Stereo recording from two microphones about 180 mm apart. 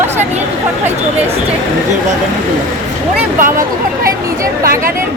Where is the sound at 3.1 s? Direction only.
50° right (ahead or behind).